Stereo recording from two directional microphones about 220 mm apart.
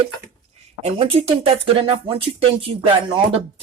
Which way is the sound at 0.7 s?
25° right (ahead or behind).